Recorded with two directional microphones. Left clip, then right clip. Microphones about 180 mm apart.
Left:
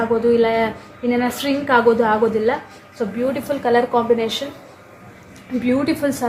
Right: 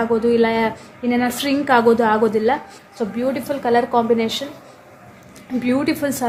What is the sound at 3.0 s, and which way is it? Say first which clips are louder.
A woman's voice: even; 30° right (ahead or behind).